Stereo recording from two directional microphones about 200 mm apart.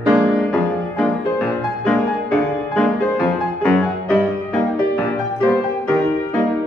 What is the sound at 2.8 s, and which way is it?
Music, 5° left (ahead or behind).